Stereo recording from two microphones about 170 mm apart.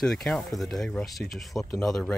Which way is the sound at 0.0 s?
Centre (ahead or behind).